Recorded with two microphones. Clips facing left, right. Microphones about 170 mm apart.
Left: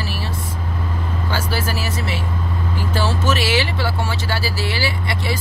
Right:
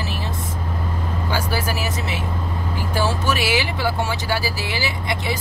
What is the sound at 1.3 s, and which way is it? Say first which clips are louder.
Speech: even; 15° right (ahead or behind).